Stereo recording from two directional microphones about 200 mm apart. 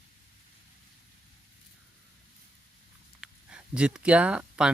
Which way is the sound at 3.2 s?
5° right (ahead or behind).